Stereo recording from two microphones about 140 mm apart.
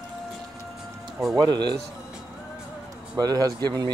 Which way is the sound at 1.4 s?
30° right (ahead or behind).